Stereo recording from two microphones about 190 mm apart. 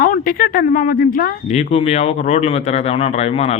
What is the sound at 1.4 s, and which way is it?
Speech, 35° left (ahead or behind).